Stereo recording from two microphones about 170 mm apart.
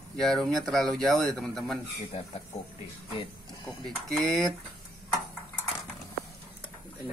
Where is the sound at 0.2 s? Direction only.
Centre (ahead or behind).